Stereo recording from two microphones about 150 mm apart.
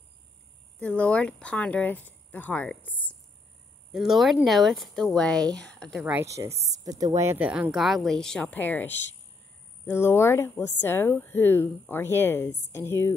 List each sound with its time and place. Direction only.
0.8 s speech: 10° left (ahead or behind)
3.9 s speech: centre (ahead or behind)
6.1 s a woman's voice: 20° right (ahead or behind)
6.5 s speech: 45° right (ahead or behind)
6.9 s speech: 25° right (ahead or behind); by 13.1 s 15° left (ahead or behind)